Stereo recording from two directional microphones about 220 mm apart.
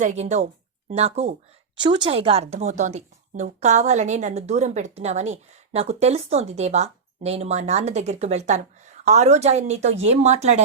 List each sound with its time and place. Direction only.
0.0 s a woman's voice: 30° right (ahead or behind)